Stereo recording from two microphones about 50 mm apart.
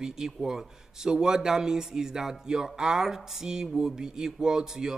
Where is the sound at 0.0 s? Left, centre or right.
Centre.